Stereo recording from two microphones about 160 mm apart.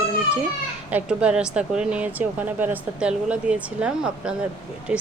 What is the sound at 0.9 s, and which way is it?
Speech, 5° right (ahead or behind).